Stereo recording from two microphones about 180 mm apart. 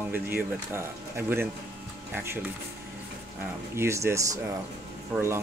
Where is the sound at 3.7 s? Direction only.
15° right (ahead or behind).